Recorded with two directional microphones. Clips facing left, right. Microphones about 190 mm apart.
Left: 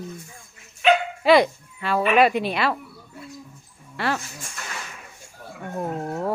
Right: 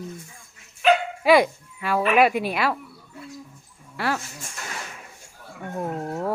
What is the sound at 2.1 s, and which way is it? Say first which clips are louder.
Speech: left 1 dB; 10° right (ahead or behind).